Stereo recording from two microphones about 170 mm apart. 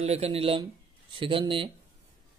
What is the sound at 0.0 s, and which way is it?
Speech, 35° right (ahead or behind).